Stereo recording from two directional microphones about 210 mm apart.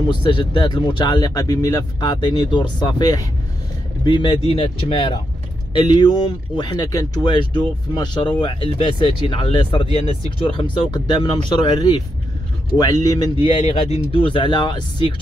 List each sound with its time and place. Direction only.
0.1 s speech: 25° left (ahead or behind)